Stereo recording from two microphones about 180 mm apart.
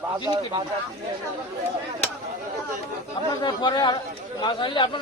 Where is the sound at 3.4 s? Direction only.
25° left (ahead or behind).